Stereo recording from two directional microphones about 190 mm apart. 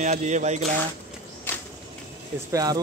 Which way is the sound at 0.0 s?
40° right (ahead or behind).